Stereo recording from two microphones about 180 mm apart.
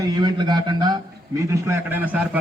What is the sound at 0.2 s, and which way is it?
A man's voice, 25° right (ahead or behind).